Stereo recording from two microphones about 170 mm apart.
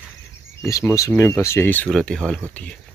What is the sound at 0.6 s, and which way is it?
Speech, 20° left (ahead or behind).